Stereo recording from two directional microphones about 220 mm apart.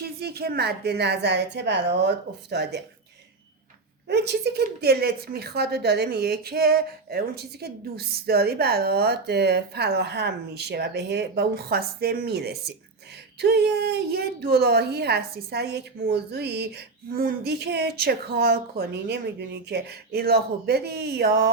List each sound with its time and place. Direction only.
0.0 s a woman's voice: 45° right (ahead or behind)
4.1 s a woman's voice: 50° right (ahead or behind)